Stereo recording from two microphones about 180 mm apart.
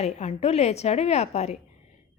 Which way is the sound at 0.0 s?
40° left (ahead or behind).